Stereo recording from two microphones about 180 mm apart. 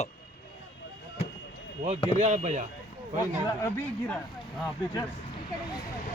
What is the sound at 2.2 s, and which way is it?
Speech, 40° right (ahead or behind).